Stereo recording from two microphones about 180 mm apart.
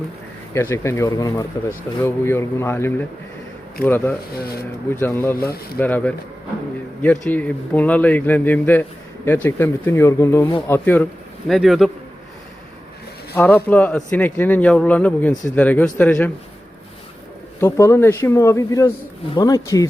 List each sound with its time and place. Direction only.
0.5 s speech: 15° left (ahead or behind)
11.4 s a man's voice: centre (ahead or behind)
13.3 s speech: 10° left (ahead or behind)
17.6 s speech: 15° left (ahead or behind)